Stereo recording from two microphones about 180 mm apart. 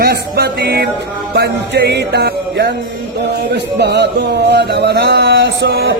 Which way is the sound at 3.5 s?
70° right (ahead or behind).